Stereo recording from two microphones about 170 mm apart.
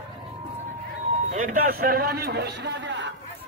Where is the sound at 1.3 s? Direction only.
50° right (ahead or behind).